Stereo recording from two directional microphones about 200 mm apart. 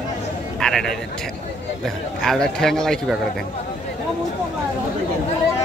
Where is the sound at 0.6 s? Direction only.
Centre (ahead or behind).